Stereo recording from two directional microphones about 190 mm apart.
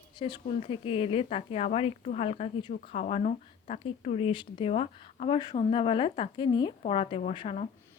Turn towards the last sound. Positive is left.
turn(degrees=35)  # may be behind; listen again after turning